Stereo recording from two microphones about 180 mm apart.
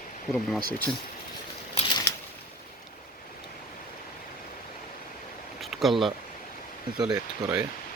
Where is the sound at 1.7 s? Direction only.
25° left (ahead or behind).